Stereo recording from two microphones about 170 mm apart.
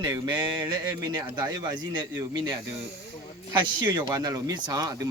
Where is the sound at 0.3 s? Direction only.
25° right (ahead or behind).